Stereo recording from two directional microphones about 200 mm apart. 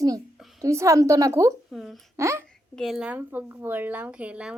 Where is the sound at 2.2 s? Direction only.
15° right (ahead or behind).